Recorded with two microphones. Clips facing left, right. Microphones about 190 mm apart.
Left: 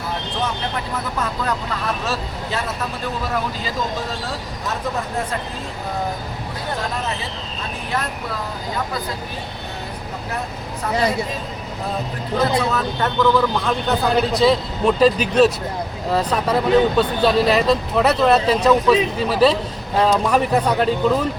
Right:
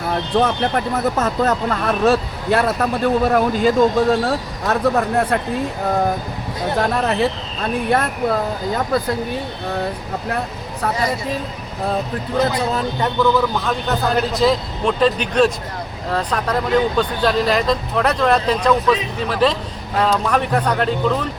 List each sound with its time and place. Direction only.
0.3 s speech: 55° right (ahead or behind)
6.7 s speech: 60° right (ahead or behind)
13.0 s a man's voice: 10° right (ahead or behind); by 21.2 s 5° left (ahead or behind)